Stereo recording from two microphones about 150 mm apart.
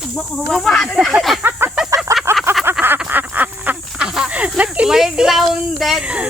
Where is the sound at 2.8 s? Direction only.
15° right (ahead or behind).